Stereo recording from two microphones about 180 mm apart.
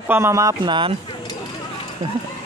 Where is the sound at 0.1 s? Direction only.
15° right (ahead or behind).